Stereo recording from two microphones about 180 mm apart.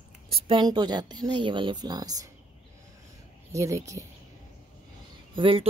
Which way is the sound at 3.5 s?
15° right (ahead or behind).